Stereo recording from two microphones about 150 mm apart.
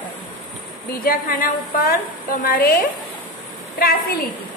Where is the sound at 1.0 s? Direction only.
70° left (ahead or behind).